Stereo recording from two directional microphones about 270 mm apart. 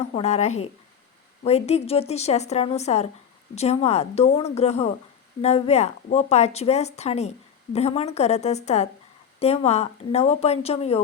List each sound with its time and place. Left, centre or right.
0.0 s speech: left